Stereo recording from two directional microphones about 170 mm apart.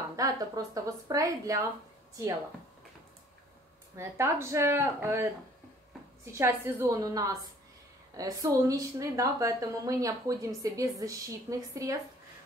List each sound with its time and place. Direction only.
0.1 s a woman's voice: 20° right (ahead or behind)
3.9 s speech: 15° right (ahead or behind)
6.3 s a woman's voice: 15° right (ahead or behind)